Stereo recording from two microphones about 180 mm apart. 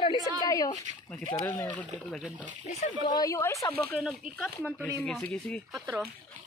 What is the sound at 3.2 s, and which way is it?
Speech, 15° left (ahead or behind).